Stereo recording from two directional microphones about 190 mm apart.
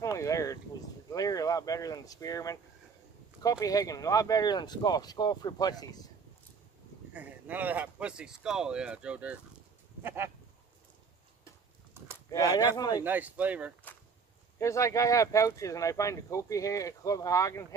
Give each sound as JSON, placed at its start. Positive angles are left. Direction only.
{"t": 0.0, "sound": "a sound", "side_deg": 15}
{"t": 1.1, "sound": "speech", "side_deg": 20}
{"t": 7.2, "sound": "speech", "side_deg": -10}
{"t": 12.3, "sound": "speech", "side_deg": 20}
{"t": 12.9, "sound": "speech", "side_deg": -10}
{"t": 14.6, "sound": "speech", "side_deg": 15}